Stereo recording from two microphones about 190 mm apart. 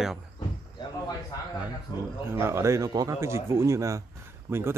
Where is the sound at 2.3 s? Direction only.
15° right (ahead or behind).